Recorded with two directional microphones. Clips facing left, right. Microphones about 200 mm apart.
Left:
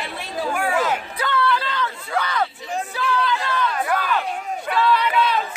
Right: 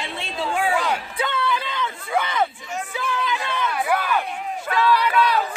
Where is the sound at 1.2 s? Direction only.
20° right (ahead or behind).